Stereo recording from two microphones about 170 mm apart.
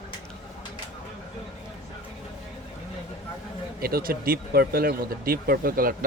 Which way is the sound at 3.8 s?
60° right (ahead or behind).